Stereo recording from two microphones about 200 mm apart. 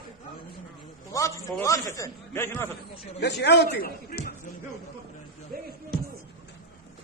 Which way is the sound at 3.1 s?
55° left (ahead or behind).